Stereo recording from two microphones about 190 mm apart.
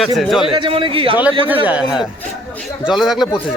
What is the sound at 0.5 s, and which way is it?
Speech, 25° right (ahead or behind).